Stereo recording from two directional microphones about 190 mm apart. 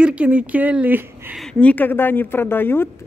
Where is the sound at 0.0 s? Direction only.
5° right (ahead or behind).